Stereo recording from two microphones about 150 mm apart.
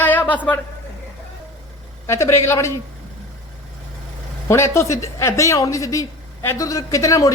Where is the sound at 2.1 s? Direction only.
20° left (ahead or behind).